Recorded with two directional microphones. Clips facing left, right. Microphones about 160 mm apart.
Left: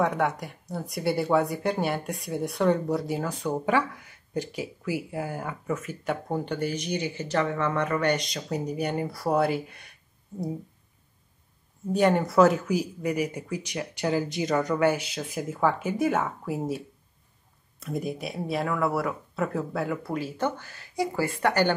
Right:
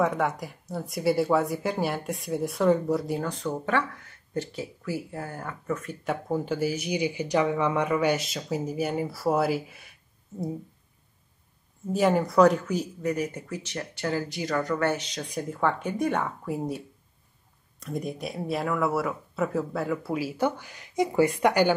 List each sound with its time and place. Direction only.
0.0 s speech: centre (ahead or behind)
11.8 s speech: centre (ahead or behind)